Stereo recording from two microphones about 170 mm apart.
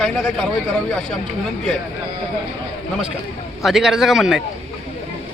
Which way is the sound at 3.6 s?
Centre (ahead or behind).